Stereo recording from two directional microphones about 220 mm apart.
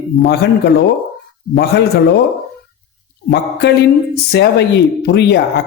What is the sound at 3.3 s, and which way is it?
Speech, 50° left (ahead or behind).